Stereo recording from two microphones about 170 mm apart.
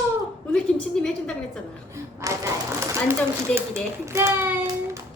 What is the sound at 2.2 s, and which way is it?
Speech, 20° right (ahead or behind).